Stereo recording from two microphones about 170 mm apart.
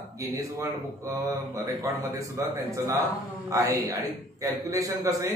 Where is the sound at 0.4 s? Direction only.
20° right (ahead or behind).